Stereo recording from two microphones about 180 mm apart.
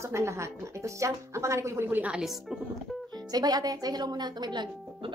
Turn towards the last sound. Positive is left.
turn(degrees=-25)  # may be behind; listen again after turning